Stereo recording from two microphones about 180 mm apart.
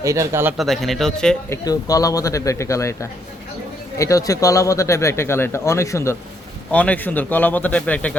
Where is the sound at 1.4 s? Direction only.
15° left (ahead or behind).